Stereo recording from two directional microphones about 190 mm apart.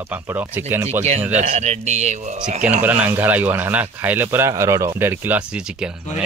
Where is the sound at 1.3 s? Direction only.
35° right (ahead or behind).